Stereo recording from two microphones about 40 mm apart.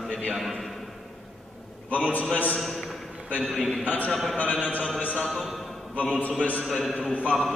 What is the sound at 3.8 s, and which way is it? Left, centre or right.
Speech, left.